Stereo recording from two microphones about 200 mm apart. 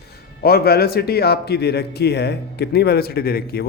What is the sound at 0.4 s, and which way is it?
A man's voice, 50° left (ahead or behind).